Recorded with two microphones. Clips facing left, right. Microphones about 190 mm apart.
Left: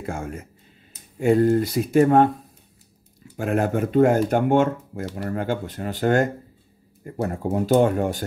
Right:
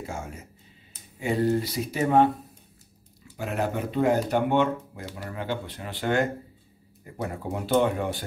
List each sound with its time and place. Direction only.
0.0 s speech: 55° left (ahead or behind)
3.3 s speech: 50° left (ahead or behind)